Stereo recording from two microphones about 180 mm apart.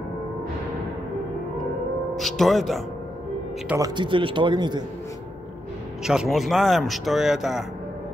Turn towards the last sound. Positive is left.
turn(degrees=0)  # may be behind; listen again after turning